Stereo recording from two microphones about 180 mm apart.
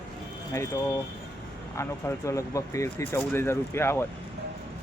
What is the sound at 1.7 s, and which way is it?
Speech, 15° left (ahead or behind).